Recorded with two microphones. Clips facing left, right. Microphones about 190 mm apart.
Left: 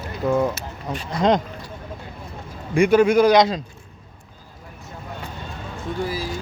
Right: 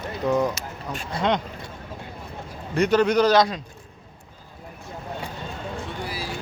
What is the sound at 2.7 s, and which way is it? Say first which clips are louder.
Speech: left 4 dB; 10° left (ahead or behind).